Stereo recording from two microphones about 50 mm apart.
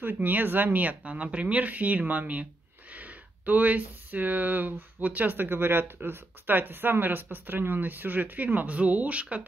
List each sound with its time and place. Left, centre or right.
0.0 s speech: right